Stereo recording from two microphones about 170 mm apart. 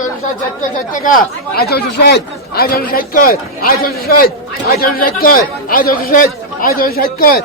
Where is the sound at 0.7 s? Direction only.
50° left (ahead or behind).